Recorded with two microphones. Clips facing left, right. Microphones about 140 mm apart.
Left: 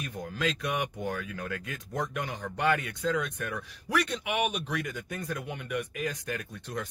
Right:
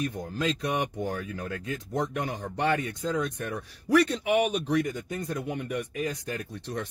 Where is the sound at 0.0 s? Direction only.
30° right (ahead or behind).